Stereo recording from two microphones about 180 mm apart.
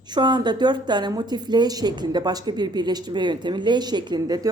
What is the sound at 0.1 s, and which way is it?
A woman's voice, 25° right (ahead or behind).